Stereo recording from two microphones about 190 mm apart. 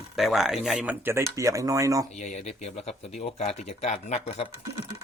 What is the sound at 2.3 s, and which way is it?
Speech, 40° left (ahead or behind).